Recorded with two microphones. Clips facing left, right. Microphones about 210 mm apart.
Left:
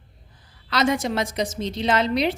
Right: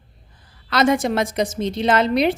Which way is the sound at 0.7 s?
50° right (ahead or behind).